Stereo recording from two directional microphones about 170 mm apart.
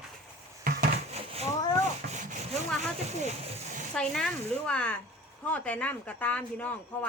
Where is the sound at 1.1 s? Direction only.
35° right (ahead or behind).